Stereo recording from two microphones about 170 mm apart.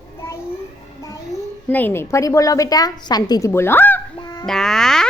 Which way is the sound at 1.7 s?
10° left (ahead or behind).